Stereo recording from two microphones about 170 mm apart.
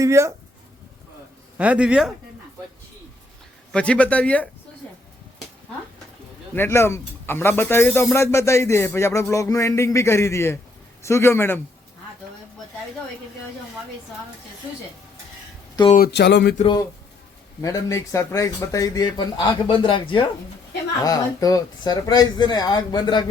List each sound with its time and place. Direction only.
0.0 s speech: 15° right (ahead or behind)
1.5 s speech: 10° right (ahead or behind)
3.7 s speech: 5° left (ahead or behind)
6.5 s speech: 15° left (ahead or behind)
16.0 s speech: 90° left
17.6 s speech: 20° left (ahead or behind)